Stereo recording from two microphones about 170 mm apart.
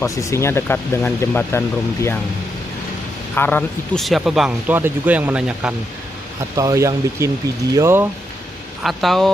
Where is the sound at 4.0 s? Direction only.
Centre (ahead or behind).